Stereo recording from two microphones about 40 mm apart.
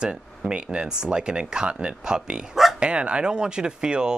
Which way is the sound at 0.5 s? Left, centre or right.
Right.